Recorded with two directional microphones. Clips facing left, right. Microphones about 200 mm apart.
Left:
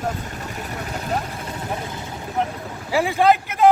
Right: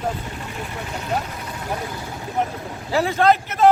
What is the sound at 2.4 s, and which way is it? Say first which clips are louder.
Speech: even; centre (ahead or behind).